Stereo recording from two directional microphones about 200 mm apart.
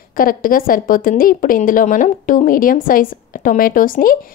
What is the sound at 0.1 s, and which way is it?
A woman's voice, 45° left (ahead or behind).